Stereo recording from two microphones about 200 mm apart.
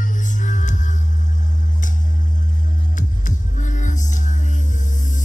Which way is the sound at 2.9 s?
40° left (ahead or behind).